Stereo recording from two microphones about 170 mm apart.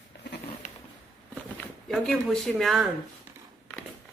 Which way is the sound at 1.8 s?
Centre (ahead or behind).